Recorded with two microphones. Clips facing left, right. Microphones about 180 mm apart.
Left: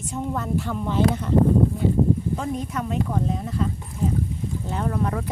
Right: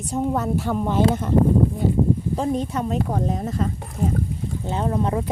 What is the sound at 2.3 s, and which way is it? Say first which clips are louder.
Speech: right 4 dB; 30° right (ahead or behind).